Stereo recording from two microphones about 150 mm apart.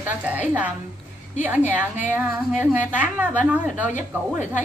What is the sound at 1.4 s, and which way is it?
A woman's voice, 10° right (ahead or behind).